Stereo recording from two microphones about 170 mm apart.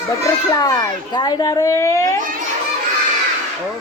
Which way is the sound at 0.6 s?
25° left (ahead or behind).